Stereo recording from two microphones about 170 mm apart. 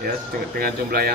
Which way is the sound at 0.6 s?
60° right (ahead or behind).